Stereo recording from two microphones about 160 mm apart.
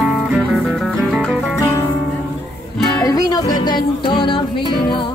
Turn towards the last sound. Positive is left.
turn(degrees=30)  # may be behind; listen again after turning